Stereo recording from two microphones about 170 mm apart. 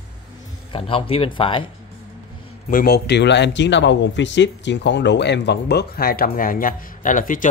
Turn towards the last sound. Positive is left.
turn(degrees=50)  # may be behind; listen again after turning